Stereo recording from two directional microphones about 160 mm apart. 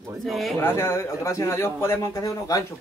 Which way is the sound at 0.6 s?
15° left (ahead or behind).